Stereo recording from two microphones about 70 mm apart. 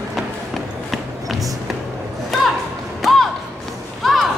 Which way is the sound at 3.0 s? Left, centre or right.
Centre.